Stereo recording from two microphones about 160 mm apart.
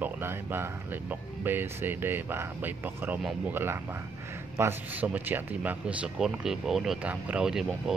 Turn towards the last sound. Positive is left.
turn(degrees=-5)  # may be behind; listen again after turning